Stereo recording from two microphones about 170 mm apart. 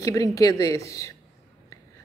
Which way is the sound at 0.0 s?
20° left (ahead or behind).